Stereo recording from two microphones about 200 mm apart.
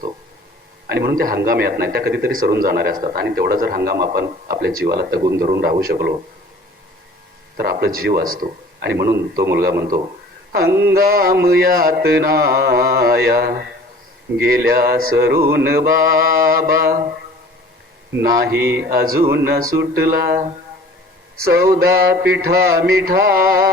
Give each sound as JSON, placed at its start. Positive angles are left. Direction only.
{"t": 0.9, "sound": "a man's voice", "side_deg": -50}
{"t": 7.5, "sound": "a man's voice", "side_deg": -50}
{"t": 18.2, "sound": "a man's voice", "side_deg": -50}
{"t": 21.4, "sound": "a man's voice", "side_deg": -50}